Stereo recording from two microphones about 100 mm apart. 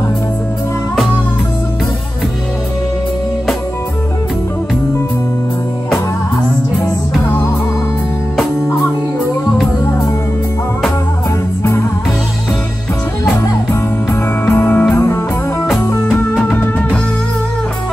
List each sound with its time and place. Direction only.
14.4 s music: 20° left (ahead or behind)
16.4 s music: 20° left (ahead or behind)